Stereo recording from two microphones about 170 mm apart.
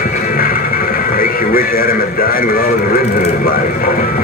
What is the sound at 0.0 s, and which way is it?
Music, 55° left (ahead or behind).